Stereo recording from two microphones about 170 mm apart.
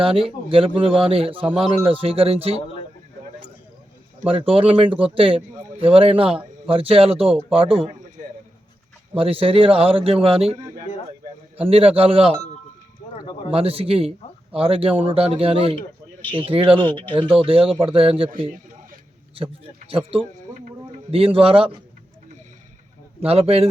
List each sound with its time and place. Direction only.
0.0 s a man's voice: 35° right (ahead or behind)
4.3 s a man's voice: 35° right (ahead or behind)
9.1 s a man's voice: 35° right (ahead or behind)
13.5 s a man's voice: 35° right (ahead or behind)
19.9 s a man's voice: 35° right (ahead or behind)
23.2 s a man's voice: 35° right (ahead or behind)